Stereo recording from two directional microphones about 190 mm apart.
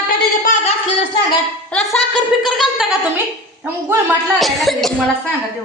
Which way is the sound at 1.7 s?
5° left (ahead or behind).